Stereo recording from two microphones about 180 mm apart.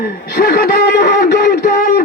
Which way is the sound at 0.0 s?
55° left (ahead or behind).